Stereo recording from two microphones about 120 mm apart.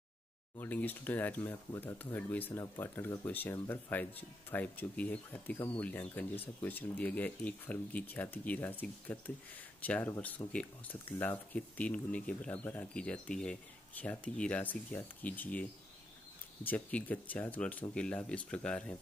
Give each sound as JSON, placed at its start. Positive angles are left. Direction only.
{"t": 0.6, "sound": "speech", "side_deg": 15}
{"t": 2.6, "sound": "speech", "side_deg": 25}
{"t": 2.9, "sound": "speech", "side_deg": 15}
{"t": 16.6, "sound": "speech", "side_deg": 15}